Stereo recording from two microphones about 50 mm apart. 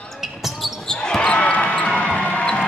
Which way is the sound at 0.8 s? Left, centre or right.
Centre.